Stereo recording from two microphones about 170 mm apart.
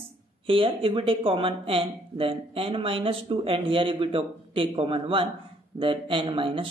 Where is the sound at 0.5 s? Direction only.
30° right (ahead or behind).